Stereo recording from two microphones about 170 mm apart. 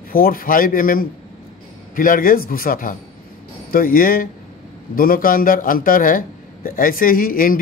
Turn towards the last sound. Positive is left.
turn(degrees=55)  # may be behind; listen again after turning